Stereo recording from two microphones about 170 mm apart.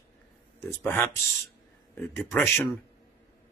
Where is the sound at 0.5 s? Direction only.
15° left (ahead or behind).